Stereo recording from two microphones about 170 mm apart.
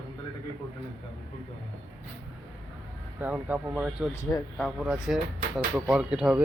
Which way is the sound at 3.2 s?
10° right (ahead or behind).